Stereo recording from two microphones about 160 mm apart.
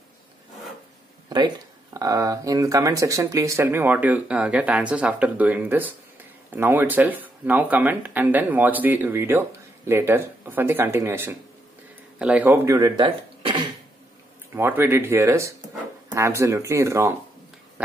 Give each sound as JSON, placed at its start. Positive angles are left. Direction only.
{"t": 2.0, "sound": "speech", "side_deg": -20}
{"t": 12.6, "sound": "speech", "side_deg": -20}
{"t": 14.5, "sound": "speech", "side_deg": -15}